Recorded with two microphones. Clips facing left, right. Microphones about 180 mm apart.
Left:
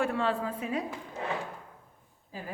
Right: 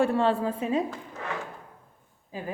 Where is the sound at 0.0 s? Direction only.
30° right (ahead or behind).